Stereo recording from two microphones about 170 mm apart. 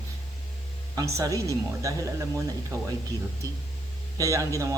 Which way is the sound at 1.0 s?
20° right (ahead or behind).